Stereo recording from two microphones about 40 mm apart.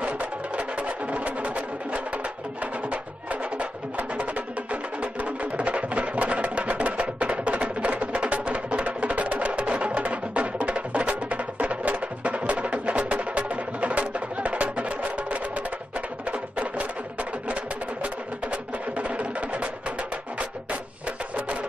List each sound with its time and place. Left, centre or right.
0.0 s music: right
16.3 s music: right